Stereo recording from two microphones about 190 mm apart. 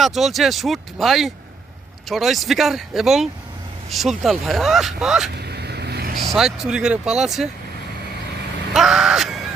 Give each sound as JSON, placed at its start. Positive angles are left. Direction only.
{"t": 0.0, "sound": "speech", "side_deg": 0}
{"t": 5.4, "sound": "vehicle", "side_deg": -60}
{"t": 6.2, "sound": "speech", "side_deg": 0}
{"t": 8.7, "sound": "caw", "side_deg": 0}